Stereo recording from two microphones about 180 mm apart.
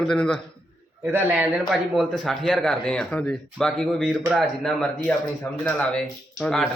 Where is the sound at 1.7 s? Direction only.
Centre (ahead or behind).